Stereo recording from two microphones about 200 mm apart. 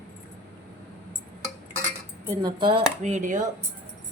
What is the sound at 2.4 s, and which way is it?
Speech, 20° right (ahead or behind).